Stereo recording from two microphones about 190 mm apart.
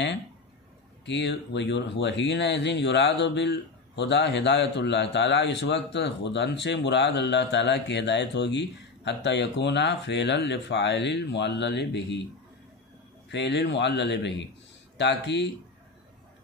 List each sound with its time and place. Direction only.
1.0 s speech: 65° left (ahead or behind)
13.3 s speech: 65° left (ahead or behind)